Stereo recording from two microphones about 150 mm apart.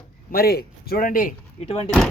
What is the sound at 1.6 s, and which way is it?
Speech, 40° left (ahead or behind).